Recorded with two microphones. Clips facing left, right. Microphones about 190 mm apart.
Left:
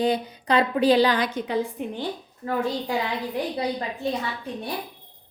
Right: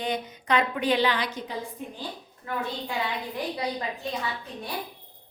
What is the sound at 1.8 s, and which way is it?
Speech, 70° left (ahead or behind).